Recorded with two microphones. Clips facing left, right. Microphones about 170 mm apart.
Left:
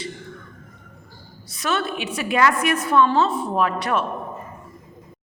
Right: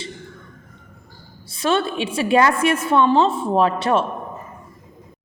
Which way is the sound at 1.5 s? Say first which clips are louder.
Right 4 dB; 25° right (ahead or behind).